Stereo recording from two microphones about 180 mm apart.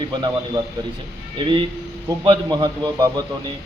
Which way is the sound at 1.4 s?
25° right (ahead or behind).